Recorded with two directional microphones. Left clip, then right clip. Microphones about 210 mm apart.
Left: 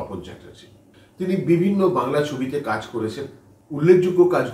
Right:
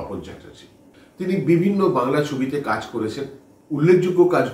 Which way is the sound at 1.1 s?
15° right (ahead or behind).